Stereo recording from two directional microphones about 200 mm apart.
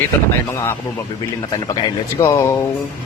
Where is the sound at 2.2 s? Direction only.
15° left (ahead or behind).